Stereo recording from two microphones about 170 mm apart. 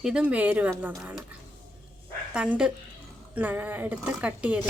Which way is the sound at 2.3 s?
5° right (ahead or behind).